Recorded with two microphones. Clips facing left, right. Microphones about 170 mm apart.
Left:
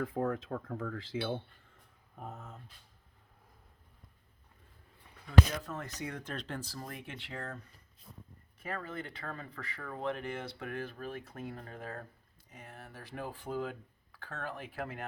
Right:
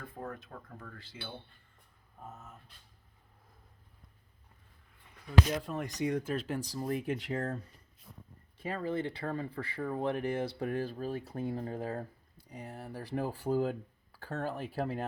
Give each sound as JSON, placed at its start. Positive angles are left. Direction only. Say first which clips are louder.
{"t": 0.0, "sound": "speech", "louder": "left 9 dB", "side_deg": 80}
{"t": 0.5, "sound": "speech", "louder": "left 10 dB", "side_deg": 65}
{"t": 2.1, "sound": "speech", "louder": "left 3 dB", "side_deg": 70}
{"t": 5.6, "sound": "speech", "louder": "right 7 dB", "side_deg": -15}
{"t": 6.8, "sound": "speech", "louder": "right 12 dB", "side_deg": -35}
{"t": 8.5, "sound": "speech", "louder": "right 6 dB", "side_deg": -30}